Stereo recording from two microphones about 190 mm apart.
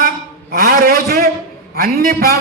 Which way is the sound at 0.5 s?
50° right (ahead or behind).